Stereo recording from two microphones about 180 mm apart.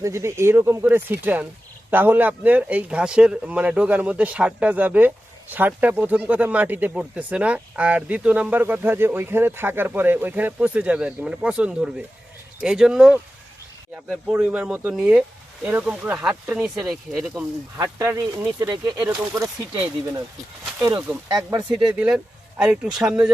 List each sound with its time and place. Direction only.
0.0 s speech: 15° right (ahead or behind)
17.3 s speech: 15° right (ahead or behind)
21.2 s speech: 20° right (ahead or behind)
21.8 s speech: 5° right (ahead or behind)